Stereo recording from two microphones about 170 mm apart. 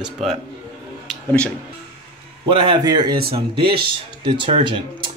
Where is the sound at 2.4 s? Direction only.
30° right (ahead or behind).